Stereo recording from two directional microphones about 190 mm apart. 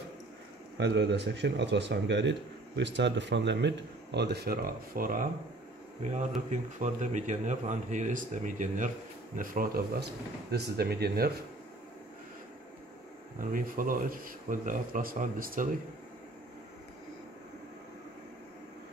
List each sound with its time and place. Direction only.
0.7 s speech: 65° right (ahead or behind); by 5.3 s 45° right (ahead or behind)
6.0 s speech: 35° right (ahead or behind); by 11.3 s 55° right (ahead or behind)
13.4 s speech: 45° right (ahead or behind)